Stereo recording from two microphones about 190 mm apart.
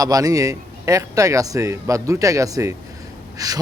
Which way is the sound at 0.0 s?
20° right (ahead or behind).